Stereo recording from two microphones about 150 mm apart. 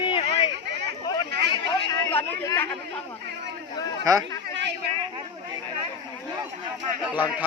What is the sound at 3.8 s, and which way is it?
Speech, 25° left (ahead or behind).